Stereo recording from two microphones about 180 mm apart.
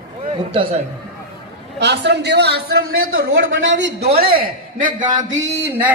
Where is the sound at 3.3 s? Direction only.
90° right.